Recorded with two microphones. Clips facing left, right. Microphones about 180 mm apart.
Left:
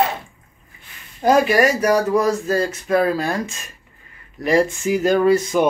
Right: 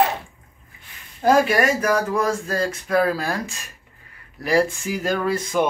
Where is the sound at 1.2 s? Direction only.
5° left (ahead or behind).